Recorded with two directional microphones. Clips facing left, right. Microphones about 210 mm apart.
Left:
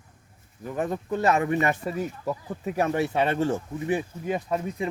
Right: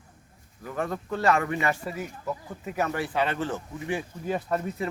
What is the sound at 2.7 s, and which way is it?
Speech, 25° left (ahead or behind).